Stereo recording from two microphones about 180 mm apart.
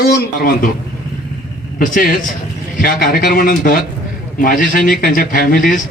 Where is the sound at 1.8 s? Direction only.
50° left (ahead or behind).